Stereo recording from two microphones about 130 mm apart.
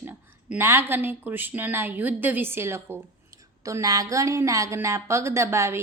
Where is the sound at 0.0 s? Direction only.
15° right (ahead or behind).